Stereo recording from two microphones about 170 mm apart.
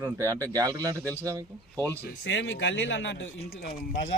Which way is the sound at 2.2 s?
90° left.